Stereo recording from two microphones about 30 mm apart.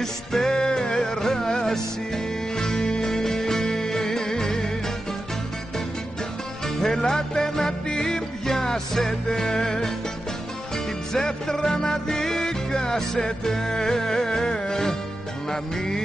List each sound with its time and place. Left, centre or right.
0.0 s music: centre
6.8 s music: centre
8.5 s music: centre
11.1 s music: centre